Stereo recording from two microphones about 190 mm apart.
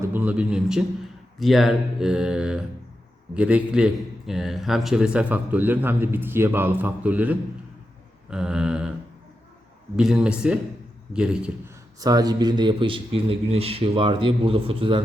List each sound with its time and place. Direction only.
0.0 s a man's voice: 10° right (ahead or behind)
9.9 s speech: 5° right (ahead or behind)
11.9 s speech: 20° right (ahead or behind)